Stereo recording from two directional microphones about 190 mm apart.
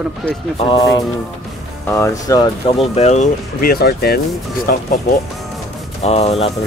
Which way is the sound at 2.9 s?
35° left (ahead or behind).